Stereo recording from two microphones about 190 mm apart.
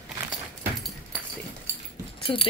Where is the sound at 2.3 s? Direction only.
25° left (ahead or behind).